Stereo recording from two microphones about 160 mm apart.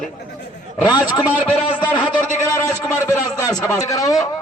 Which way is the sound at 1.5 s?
35° left (ahead or behind).